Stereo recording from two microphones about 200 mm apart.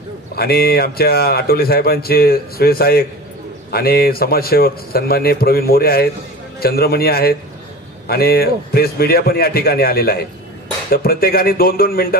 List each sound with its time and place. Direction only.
0.4 s speech: 50° left (ahead or behind)